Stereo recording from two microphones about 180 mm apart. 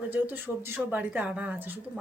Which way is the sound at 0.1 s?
10° right (ahead or behind).